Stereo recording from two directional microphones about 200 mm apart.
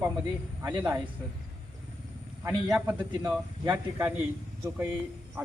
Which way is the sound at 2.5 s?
5° right (ahead or behind).